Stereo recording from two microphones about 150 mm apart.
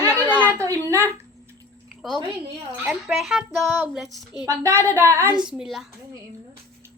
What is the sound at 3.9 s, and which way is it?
Speech, 5° right (ahead or behind).